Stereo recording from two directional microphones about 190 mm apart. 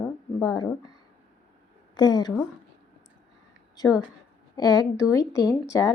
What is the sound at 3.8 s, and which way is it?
Speech, 20° left (ahead or behind).